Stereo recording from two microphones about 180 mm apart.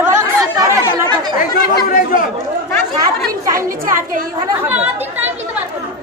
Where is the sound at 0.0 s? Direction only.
15° right (ahead or behind).